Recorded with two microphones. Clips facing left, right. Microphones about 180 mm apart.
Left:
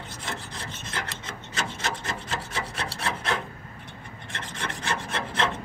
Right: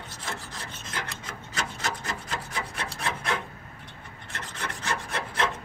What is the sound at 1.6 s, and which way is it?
Rub, 25° left (ahead or behind).